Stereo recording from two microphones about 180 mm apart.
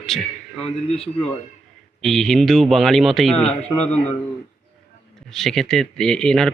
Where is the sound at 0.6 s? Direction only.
35° left (ahead or behind).